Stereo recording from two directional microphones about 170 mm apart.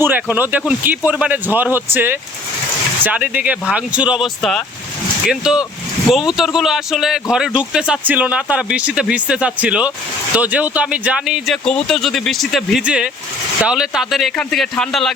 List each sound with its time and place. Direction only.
0.0 s speech: 10° right (ahead or behind)